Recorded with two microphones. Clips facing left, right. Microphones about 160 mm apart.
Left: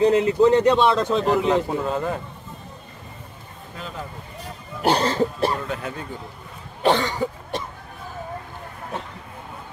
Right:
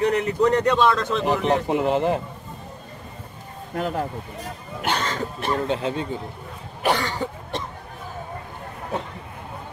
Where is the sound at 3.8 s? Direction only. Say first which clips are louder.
Right 9 dB; 60° right (ahead or behind).